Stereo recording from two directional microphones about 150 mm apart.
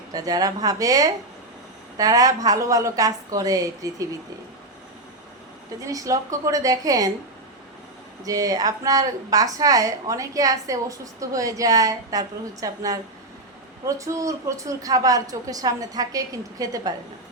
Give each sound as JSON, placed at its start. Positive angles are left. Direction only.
{"t": 0.1, "sound": "a woman's voice", "side_deg": -25}
{"t": 5.8, "sound": "a woman's voice", "side_deg": -25}
{"t": 8.2, "sound": "a woman's voice", "side_deg": -25}